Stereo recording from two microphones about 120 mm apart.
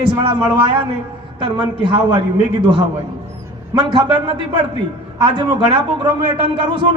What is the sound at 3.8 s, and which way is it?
A man's voice, 40° right (ahead or behind).